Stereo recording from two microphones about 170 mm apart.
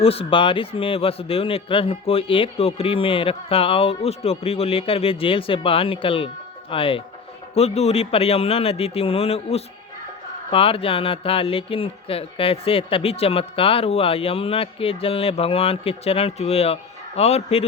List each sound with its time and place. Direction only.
0.0 s a man's voice: 35° left (ahead or behind)